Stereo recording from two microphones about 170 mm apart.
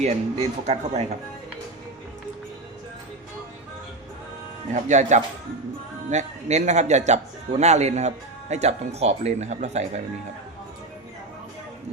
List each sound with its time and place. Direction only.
0.0 s speech: 40° right (ahead or behind)
4.7 s speech: 45° right (ahead or behind)